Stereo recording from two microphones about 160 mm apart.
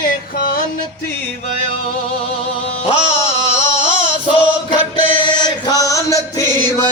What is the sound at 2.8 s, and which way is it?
Music, 40° left (ahead or behind).